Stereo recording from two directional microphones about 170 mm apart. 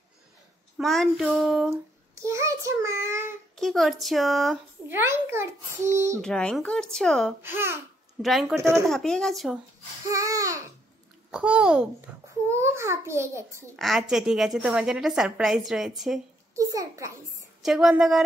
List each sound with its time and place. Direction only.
0.7 s a woman's voice: centre (ahead or behind)
2.2 s child singing: 15° right (ahead or behind)
3.5 s a woman's voice: centre (ahead or behind)
4.8 s a child's voice: 15° right (ahead or behind)
6.2 s a woman's voice: 5° left (ahead or behind)
7.4 s a child's voice: 15° right (ahead or behind)
8.2 s a woman's voice: centre (ahead or behind)
8.5 s a child's voice: 15° right (ahead or behind)
8.8 s a woman's voice: 5° left (ahead or behind)
10.0 s babbling: 20° right (ahead or behind)
11.2 s a child's voice: 5° right (ahead or behind)
13.7 s a woman's voice: centre (ahead or behind)
16.5 s a child's voice: 20° right (ahead or behind)
17.6 s a woman's voice: centre (ahead or behind)